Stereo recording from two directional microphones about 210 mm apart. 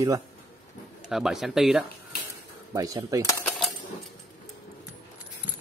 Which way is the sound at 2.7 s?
15° right (ahead or behind).